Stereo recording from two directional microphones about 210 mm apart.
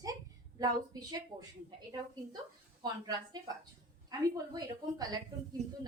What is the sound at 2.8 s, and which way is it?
A woman's voice, 20° right (ahead or behind).